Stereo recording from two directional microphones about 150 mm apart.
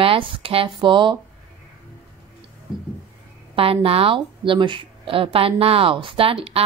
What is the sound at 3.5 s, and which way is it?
A woman's voice, 40° right (ahead or behind).